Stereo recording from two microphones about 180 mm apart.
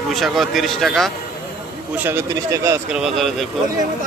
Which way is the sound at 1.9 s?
10° right (ahead or behind).